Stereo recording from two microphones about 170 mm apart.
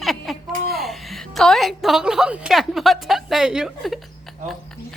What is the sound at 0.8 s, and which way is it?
A woman's voice, centre (ahead or behind).